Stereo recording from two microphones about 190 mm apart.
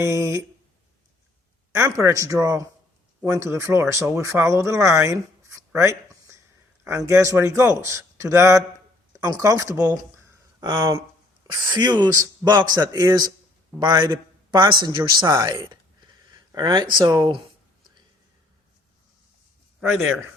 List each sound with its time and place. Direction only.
0.0 s a man's voice: 15° right (ahead or behind)
1.7 s a man's voice: 15° right (ahead or behind)